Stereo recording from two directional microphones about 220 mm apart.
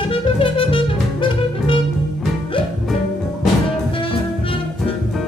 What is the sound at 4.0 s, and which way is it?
Music, 25° left (ahead or behind).